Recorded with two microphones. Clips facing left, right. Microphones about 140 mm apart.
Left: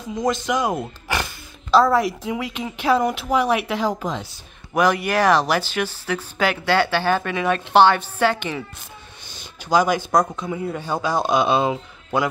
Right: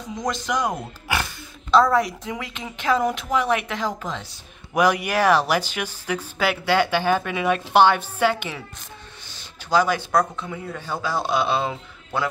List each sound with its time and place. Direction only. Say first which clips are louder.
0.1 s a woman's voice: left 4 dB; centre (ahead or behind)
1.7 s a woman's voice: left 1 dB; 5° left (ahead or behind)
3.3 s speech: left 3 dB; 10° left (ahead or behind)
4.7 s speech: left 1 dB; 10° right (ahead or behind)
9.4 s speech: left 2 dB; 15° left (ahead or behind)